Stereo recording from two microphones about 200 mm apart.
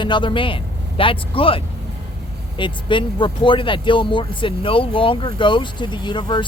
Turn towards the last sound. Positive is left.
turn(degrees=20)  # may be behind; listen again after turning